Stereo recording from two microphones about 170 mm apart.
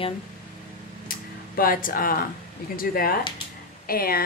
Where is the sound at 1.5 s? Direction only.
55° left (ahead or behind).